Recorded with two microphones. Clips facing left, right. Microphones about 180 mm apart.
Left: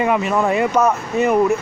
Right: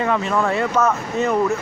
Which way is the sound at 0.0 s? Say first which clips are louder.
Left 2 dB; 15° left (ahead or behind).